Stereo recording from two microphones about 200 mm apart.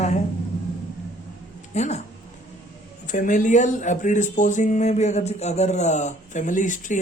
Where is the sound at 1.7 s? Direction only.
35° left (ahead or behind).